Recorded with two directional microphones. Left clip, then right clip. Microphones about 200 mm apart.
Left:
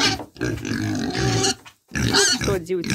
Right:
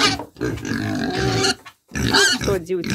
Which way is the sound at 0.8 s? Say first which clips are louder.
Right 3 dB; 15° right (ahead or behind).